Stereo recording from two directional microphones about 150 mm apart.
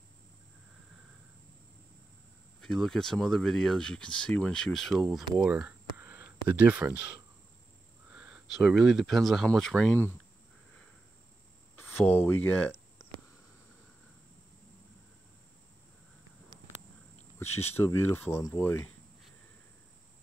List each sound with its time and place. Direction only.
2.6 s speech: centre (ahead or behind)
5.1 s a sound: 5° right (ahead or behind)
6.5 s speech: 10° right (ahead or behind)
11.7 s speech: 15° left (ahead or behind)
17.4 s speech: 15° left (ahead or behind)